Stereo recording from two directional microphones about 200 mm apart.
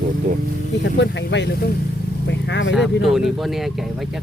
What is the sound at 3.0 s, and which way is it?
Speech, centre (ahead or behind).